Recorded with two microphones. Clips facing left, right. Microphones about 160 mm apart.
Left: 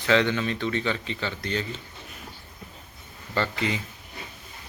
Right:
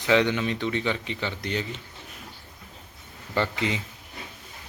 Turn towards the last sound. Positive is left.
turn(degrees=-20)  # may be behind; listen again after turning